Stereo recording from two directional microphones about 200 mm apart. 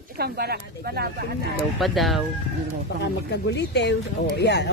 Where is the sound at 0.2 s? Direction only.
50° right (ahead or behind).